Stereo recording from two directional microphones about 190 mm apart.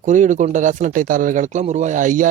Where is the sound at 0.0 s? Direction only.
40° right (ahead or behind).